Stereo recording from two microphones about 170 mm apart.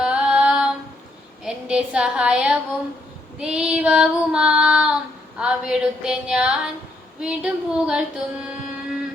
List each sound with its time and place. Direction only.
0.0 s female singing: 5° right (ahead or behind)
1.5 s a woman's voice: 5° right (ahead or behind)
3.3 s child singing: 5° right (ahead or behind)